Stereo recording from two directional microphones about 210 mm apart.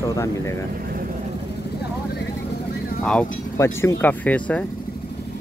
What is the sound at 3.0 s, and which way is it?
Speech, 5° left (ahead or behind).